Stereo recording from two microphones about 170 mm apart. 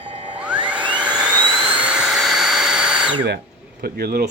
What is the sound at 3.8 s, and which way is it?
Speech, 65° right (ahead or behind).